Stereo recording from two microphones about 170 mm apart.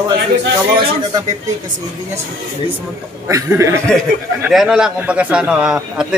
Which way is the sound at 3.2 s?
20° right (ahead or behind).